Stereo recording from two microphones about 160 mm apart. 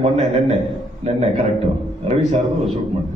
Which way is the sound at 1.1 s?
40° right (ahead or behind).